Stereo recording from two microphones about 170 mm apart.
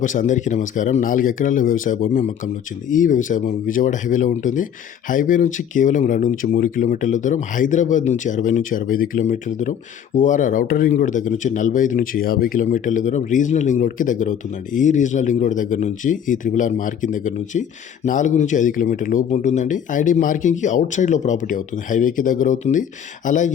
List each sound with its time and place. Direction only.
0.0 s speech: 50° left (ahead or behind)